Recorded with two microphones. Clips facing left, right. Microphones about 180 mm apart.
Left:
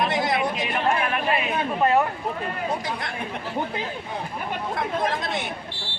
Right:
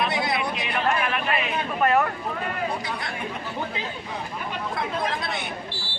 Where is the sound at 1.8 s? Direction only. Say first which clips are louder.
Left 1 dB; 25° left (ahead or behind).